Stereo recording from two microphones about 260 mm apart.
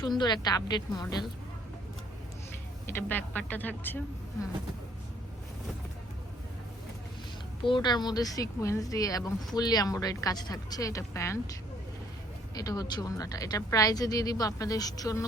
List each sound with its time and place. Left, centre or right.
0.0 s a woman's voice: centre
2.8 s a woman's voice: centre
7.6 s a woman's voice: centre
12.5 s a woman's voice: centre